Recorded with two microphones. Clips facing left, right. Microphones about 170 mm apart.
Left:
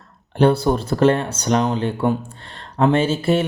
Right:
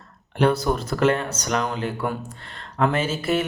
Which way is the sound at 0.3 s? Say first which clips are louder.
Left 4 dB; 30° left (ahead or behind).